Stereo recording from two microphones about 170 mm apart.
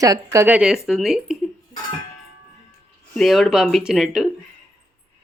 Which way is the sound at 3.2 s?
Centre (ahead or behind).